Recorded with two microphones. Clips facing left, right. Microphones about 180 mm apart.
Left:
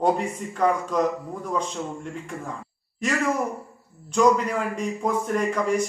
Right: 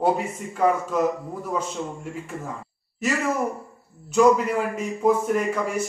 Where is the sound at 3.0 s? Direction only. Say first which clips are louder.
Even; 5° right (ahead or behind).